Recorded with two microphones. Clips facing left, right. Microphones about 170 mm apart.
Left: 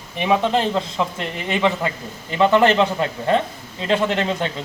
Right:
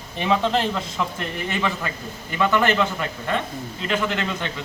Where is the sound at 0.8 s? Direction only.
25° left (ahead or behind).